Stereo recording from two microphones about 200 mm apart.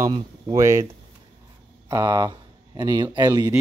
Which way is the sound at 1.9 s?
20° right (ahead or behind).